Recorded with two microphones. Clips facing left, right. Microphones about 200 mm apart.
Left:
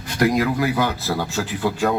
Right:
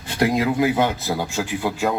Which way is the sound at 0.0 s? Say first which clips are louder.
Left 1 dB; 25° right (ahead or behind).